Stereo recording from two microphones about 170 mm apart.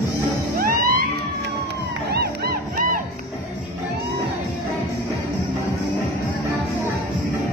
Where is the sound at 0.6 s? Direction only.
60° right (ahead or behind).